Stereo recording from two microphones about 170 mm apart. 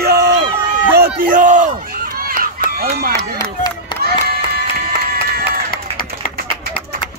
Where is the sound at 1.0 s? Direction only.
55° right (ahead or behind).